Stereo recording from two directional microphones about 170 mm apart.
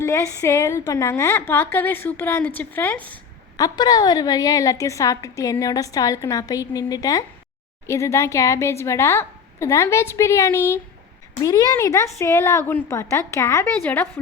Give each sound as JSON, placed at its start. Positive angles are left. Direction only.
{"t": 0.0, "sound": "a woman's voice", "side_deg": 15}
{"t": 3.6, "sound": "a woman's voice", "side_deg": 25}